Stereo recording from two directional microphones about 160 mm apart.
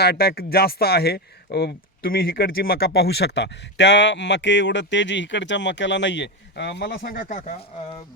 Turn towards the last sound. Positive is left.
turn(degrees=50)  # may be behind; listen again after turning